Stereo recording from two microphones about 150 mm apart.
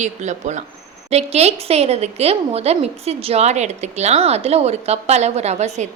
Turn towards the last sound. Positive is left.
turn(degrees=-50)  # may be behind; listen again after turning